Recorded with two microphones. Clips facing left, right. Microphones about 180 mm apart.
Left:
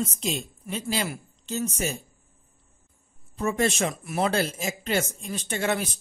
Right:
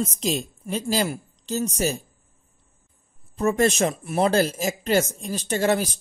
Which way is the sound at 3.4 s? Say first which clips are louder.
Right 5 dB; 40° right (ahead or behind).